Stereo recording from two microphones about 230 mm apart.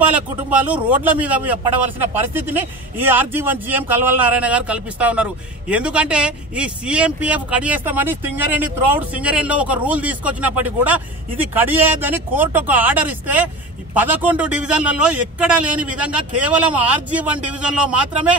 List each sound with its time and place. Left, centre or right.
0.1 s a man's voice: centre